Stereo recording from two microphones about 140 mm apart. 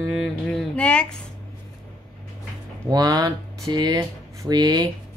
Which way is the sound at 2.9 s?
25° right (ahead or behind).